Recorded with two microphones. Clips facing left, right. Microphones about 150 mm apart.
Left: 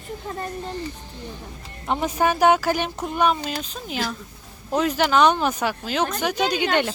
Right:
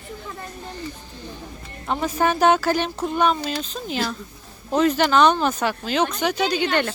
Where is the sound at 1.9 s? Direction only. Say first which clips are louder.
Even; 15° left (ahead or behind).